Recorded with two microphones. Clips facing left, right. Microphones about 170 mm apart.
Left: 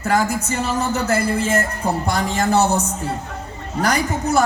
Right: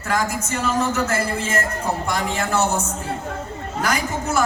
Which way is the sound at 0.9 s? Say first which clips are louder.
Left 3 dB; 35° left (ahead or behind).